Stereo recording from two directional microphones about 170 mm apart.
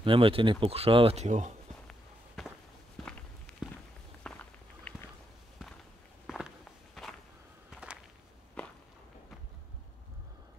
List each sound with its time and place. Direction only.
0.0 s speech: 30° right (ahead or behind)
1.9 s walk: centre (ahead or behind)
6.2 s a sound: centre (ahead or behind)
7.7 s walk: 5° right (ahead or behind)
8.6 s walk: 5° left (ahead or behind)